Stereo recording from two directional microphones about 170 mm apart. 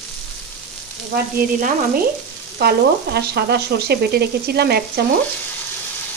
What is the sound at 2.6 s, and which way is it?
Frying, 70° right (ahead or behind).